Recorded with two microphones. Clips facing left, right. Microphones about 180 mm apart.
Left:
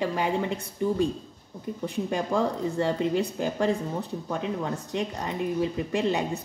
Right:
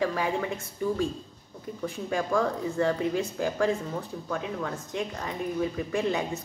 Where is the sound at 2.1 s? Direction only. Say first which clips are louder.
Right 1 dB; 20° left (ahead or behind).